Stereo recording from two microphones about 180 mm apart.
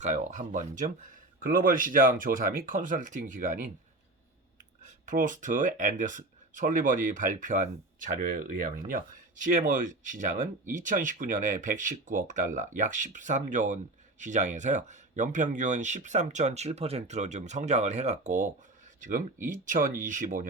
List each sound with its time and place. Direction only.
0.0 s speech: 45° right (ahead or behind)
4.8 s speech: 45° right (ahead or behind)